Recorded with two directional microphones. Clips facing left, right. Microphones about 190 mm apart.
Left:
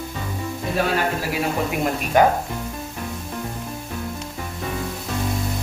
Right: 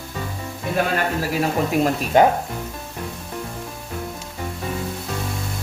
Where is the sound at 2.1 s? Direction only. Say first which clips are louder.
Right 1 dB; 25° right (ahead or behind).